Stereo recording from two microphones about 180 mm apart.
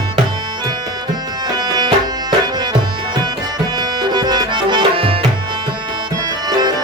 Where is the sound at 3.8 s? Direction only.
25° right (ahead or behind).